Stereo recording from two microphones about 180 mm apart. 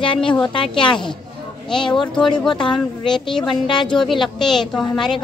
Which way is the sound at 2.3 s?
25° left (ahead or behind).